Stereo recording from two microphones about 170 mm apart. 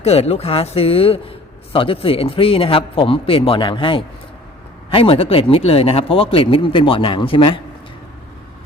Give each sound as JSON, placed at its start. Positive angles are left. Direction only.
{"t": 0.0, "sound": "speech", "side_deg": 35}